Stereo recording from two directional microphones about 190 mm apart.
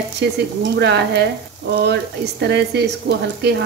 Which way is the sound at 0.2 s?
60° right (ahead or behind).